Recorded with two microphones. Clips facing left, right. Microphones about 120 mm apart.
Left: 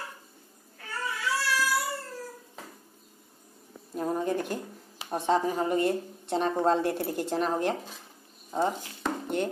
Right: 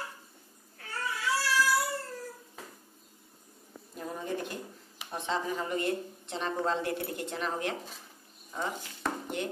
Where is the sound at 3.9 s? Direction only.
50° left (ahead or behind).